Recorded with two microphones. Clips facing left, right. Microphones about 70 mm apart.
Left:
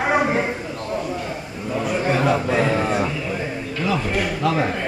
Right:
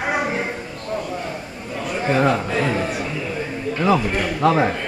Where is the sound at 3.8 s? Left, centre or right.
Right.